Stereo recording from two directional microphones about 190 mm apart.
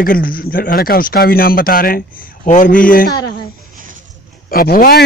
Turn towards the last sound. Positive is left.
turn(degrees=50)  # may be behind; listen again after turning